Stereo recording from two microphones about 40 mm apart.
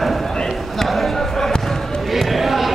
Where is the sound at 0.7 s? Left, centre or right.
Centre.